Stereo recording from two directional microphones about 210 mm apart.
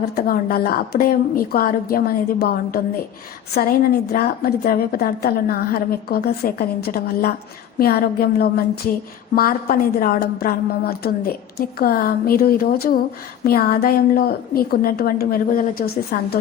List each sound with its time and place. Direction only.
0.2 s a woman's voice: 45° left (ahead or behind)
4.1 s a woman's voice: 45° left (ahead or behind)